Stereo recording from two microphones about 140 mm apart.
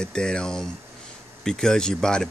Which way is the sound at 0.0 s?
5° left (ahead or behind).